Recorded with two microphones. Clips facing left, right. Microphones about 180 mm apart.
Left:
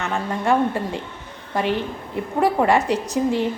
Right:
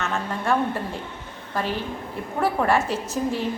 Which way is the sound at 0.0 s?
15° left (ahead or behind).